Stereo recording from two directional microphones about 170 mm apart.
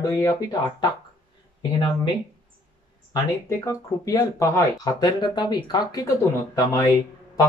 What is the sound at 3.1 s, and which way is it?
Speech, 20° left (ahead or behind).